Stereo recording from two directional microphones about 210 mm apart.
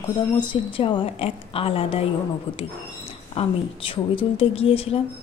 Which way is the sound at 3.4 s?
25° left (ahead or behind).